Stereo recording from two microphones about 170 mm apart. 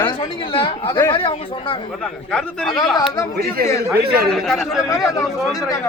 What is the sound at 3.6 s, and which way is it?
Speech, 65° right (ahead or behind).